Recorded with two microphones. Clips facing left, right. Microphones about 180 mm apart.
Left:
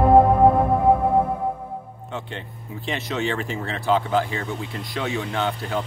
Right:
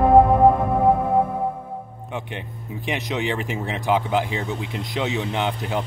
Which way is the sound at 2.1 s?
15° right (ahead or behind).